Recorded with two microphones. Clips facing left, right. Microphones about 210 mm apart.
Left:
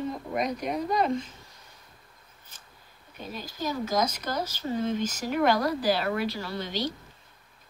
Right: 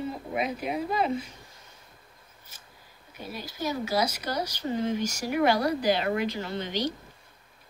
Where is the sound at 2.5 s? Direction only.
10° right (ahead or behind).